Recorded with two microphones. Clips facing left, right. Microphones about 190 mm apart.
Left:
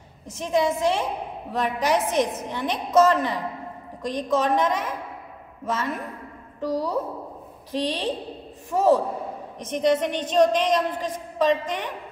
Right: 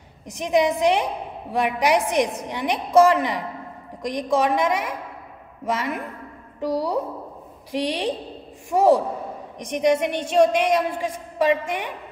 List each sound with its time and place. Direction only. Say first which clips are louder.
0.3 s a woman's voice: right 3 dB; 15° right (ahead or behind)